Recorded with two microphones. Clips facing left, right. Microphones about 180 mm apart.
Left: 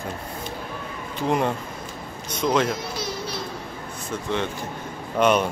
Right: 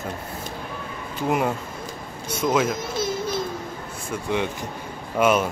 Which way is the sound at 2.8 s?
50° right (ahead or behind).